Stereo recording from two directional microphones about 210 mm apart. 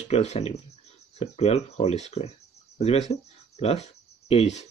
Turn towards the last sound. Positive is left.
turn(degrees=30)  # may be behind; listen again after turning